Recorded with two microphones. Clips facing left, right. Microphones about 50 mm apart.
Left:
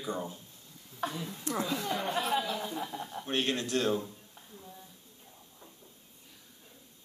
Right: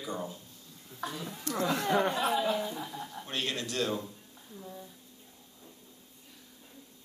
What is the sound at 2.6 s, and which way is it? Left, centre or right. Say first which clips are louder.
Speech: left 1 dB; left.